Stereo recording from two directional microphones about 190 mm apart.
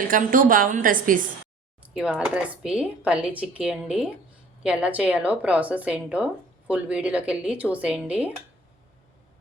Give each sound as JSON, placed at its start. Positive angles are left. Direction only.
{"t": 0.1, "sound": "a woman's voice", "side_deg": -45}
{"t": 1.9, "sound": "a woman's voice", "side_deg": -5}